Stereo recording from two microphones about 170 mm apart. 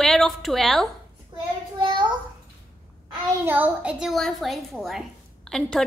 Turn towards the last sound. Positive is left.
turn(degrees=5)  # may be behind; listen again after turning